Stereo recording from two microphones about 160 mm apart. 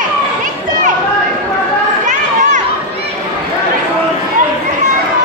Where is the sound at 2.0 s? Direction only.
50° right (ahead or behind).